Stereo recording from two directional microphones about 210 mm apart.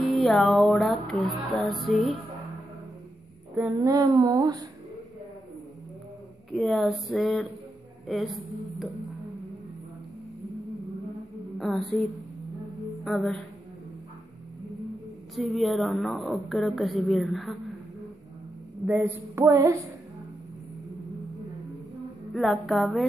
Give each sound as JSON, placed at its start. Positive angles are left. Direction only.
{"t": 0.0, "sound": "a woman's voice", "side_deg": 0}
{"t": 3.5, "sound": "speech", "side_deg": -10}
{"t": 6.5, "sound": "a woman's voice", "side_deg": 0}
{"t": 11.5, "sound": "a sound", "side_deg": 0}
{"t": 13.0, "sound": "a woman's voice", "side_deg": 5}
{"t": 15.3, "sound": "a woman's voice", "side_deg": 0}
{"t": 18.9, "sound": "speech", "side_deg": -10}
{"t": 22.3, "sound": "a woman's voice", "side_deg": 0}